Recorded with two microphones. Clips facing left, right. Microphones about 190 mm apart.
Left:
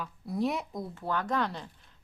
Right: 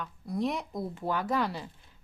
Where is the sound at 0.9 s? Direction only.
10° right (ahead or behind).